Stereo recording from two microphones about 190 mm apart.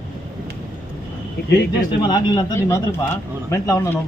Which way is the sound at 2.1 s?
20° left (ahead or behind).